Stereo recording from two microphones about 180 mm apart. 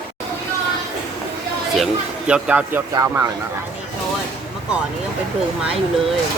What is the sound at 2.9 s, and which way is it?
Speech, 20° right (ahead or behind).